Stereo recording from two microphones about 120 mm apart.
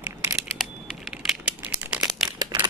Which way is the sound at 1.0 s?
5° right (ahead or behind).